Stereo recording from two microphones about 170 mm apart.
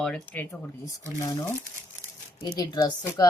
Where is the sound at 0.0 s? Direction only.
10° left (ahead or behind).